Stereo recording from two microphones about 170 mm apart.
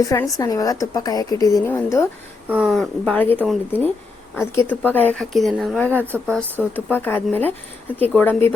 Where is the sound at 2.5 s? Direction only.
5° right (ahead or behind).